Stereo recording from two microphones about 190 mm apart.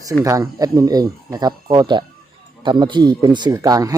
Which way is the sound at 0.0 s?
15° right (ahead or behind).